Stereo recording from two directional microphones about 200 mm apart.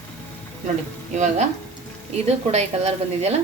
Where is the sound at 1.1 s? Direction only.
35° right (ahead or behind).